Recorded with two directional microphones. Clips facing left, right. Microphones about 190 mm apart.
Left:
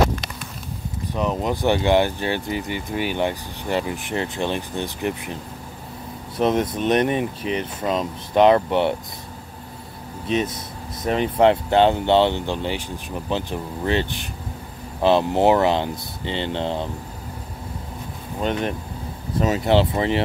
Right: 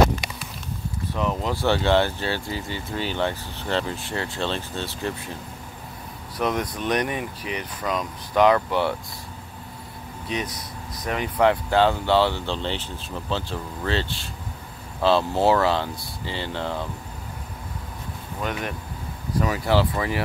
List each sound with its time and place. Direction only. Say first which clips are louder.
1.1 s speech: left 3 dB; 20° left (ahead or behind)
10.2 s speech: left 7 dB; 25° left (ahead or behind)
18.4 s speech: left 6 dB; 25° left (ahead or behind)